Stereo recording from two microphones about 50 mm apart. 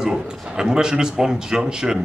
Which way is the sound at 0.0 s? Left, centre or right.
Centre.